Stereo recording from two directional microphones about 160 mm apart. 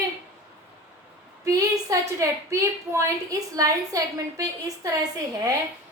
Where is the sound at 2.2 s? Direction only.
20° right (ahead or behind).